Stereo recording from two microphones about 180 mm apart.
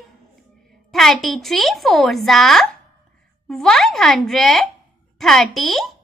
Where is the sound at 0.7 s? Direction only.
Centre (ahead or behind).